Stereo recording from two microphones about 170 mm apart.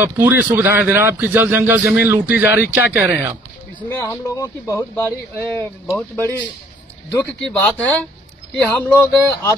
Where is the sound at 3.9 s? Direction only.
15° left (ahead or behind).